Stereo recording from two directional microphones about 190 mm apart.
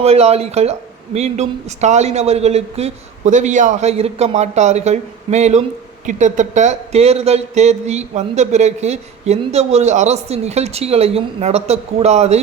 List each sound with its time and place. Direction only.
0.0 s speech: 35° right (ahead or behind)